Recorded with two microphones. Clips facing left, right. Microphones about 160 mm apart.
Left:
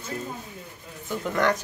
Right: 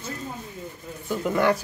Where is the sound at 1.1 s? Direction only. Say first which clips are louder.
Right 2 dB; 5° right (ahead or behind).